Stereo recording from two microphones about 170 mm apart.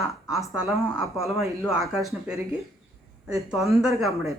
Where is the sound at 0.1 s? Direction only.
Centre (ahead or behind).